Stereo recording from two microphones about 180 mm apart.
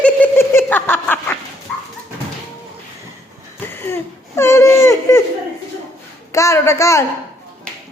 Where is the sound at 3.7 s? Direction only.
10° left (ahead or behind).